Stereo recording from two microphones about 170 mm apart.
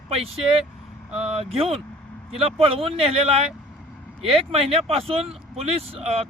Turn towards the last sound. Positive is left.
turn(degrees=-35)  # may be behind; listen again after turning